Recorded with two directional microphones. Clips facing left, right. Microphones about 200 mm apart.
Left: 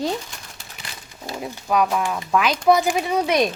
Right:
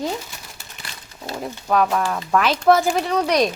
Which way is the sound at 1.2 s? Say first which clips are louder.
Right 2 dB; 10° left (ahead or behind).